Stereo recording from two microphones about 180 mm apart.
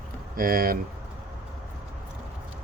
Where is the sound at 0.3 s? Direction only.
55° right (ahead or behind).